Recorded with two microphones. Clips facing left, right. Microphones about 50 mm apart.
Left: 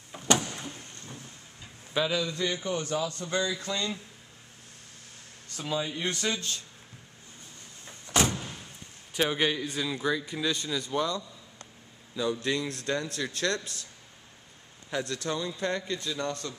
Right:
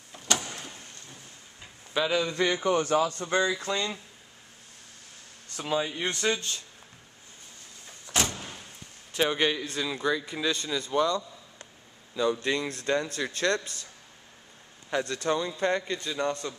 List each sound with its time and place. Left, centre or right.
2.2 s a man's voice: right
5.6 s a man's voice: centre
8.1 s door: centre
9.1 s a man's voice: centre
14.9 s a man's voice: centre